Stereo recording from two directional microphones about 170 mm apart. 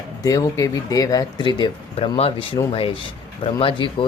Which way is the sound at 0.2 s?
20° left (ahead or behind).